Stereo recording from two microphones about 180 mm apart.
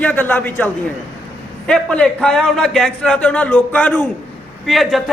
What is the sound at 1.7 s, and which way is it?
A man's voice, 5° left (ahead or behind).